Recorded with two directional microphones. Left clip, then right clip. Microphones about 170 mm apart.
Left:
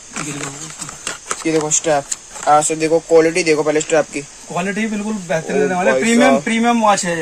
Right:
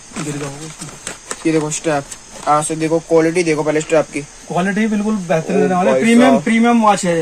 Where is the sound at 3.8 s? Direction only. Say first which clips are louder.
Right 1 dB; 20° left (ahead or behind).